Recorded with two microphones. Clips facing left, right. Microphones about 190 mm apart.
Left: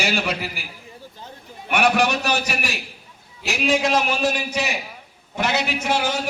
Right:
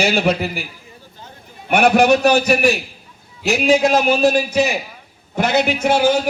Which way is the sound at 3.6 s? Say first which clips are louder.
Right 5 dB; 45° right (ahead or behind).